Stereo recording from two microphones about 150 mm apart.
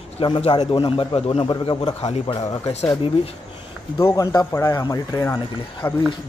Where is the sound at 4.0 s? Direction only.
20° left (ahead or behind).